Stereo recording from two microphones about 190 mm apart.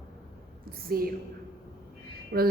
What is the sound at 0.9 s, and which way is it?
Speech, 50° right (ahead or behind).